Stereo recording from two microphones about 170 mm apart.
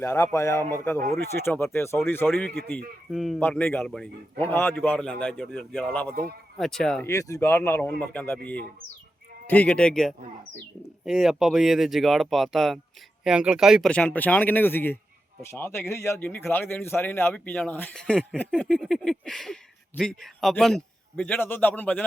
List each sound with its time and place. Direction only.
0.0 s a man's voice: 15° left (ahead or behind)
2.2 s a man's voice: centre (ahead or behind)
7.0 s a man's voice: 20° left (ahead or behind)
9.5 s a man's voice: 10° left (ahead or behind)